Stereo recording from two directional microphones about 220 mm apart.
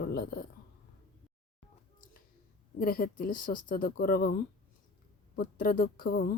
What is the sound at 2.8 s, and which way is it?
Speech, 40° left (ahead or behind).